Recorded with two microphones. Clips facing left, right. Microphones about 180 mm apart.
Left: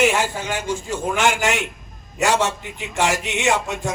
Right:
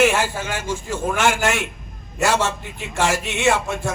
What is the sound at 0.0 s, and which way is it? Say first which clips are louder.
A man's voice: right 1 dB; 15° left (ahead or behind).